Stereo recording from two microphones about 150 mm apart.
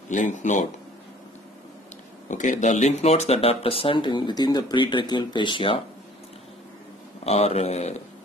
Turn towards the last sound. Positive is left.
turn(degrees=45)  # may be behind; listen again after turning